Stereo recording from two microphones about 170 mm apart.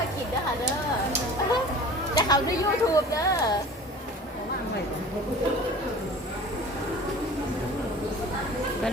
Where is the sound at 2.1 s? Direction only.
20° left (ahead or behind).